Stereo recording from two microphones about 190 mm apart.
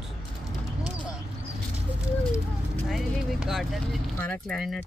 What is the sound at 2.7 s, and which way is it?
Speech, centre (ahead or behind).